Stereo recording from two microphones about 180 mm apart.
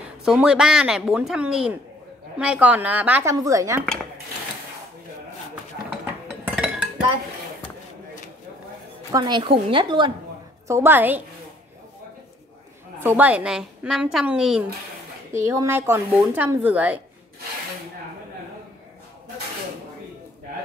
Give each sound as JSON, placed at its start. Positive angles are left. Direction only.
{"t": 0.2, "sound": "a woman's voice", "side_deg": -5}
{"t": 6.4, "sound": "music", "side_deg": -5}
{"t": 9.1, "sound": "speech", "side_deg": -25}
{"t": 10.7, "sound": "a woman's voice", "side_deg": -10}
{"t": 13.0, "sound": "a woman's voice", "side_deg": -10}
{"t": 15.4, "sound": "a woman's voice", "side_deg": -15}